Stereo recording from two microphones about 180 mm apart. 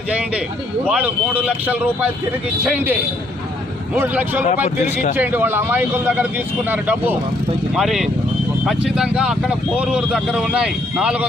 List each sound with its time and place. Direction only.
0.1 s speech: 5° right (ahead or behind)
3.9 s speech: 10° right (ahead or behind)
4.6 s speech: 40° left (ahead or behind)
5.1 s speech: 10° right (ahead or behind)